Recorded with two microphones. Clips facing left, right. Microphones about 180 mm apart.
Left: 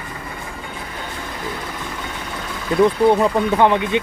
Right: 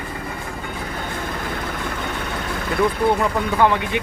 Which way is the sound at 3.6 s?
20° left (ahead or behind).